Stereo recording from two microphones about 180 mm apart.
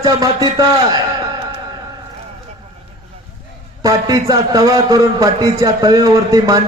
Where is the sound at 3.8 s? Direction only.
20° right (ahead or behind).